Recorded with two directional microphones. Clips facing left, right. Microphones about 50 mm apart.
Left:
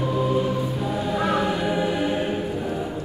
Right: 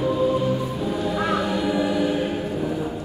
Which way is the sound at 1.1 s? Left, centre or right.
Centre.